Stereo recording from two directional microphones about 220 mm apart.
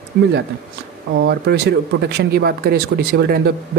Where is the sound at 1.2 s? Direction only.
50° right (ahead or behind).